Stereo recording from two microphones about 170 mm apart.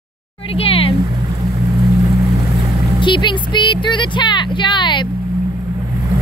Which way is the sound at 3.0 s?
30° left (ahead or behind).